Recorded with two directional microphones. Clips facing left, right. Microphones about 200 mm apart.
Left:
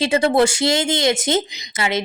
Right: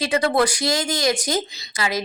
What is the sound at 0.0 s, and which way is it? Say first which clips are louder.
Speech: left 3 dB; 25° left (ahead or behind).